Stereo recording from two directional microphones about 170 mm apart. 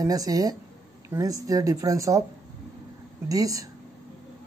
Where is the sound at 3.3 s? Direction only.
20° right (ahead or behind).